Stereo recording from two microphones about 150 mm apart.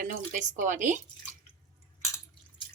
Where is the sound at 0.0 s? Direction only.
55° right (ahead or behind).